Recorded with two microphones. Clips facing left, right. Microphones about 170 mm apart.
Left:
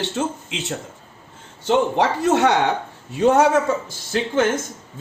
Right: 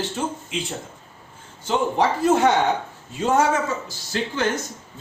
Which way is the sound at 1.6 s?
70° left (ahead or behind).